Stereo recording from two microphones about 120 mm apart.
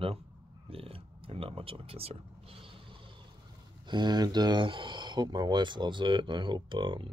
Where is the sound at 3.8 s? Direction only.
35° right (ahead or behind).